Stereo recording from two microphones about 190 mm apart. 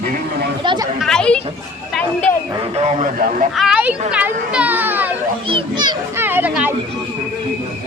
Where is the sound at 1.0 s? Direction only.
5° left (ahead or behind).